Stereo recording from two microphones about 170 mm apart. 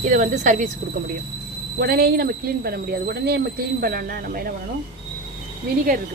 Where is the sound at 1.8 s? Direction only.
65° right (ahead or behind).